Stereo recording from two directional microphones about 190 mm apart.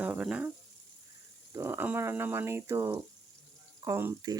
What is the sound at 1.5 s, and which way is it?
Speech, 15° right (ahead or behind).